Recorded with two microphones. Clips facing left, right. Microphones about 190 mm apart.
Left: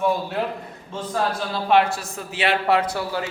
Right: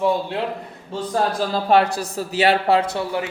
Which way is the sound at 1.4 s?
40° right (ahead or behind).